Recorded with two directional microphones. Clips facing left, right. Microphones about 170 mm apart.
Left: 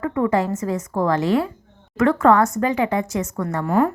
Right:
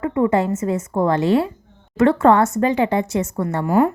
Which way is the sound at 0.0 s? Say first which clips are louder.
Right 2 dB; 20° right (ahead or behind).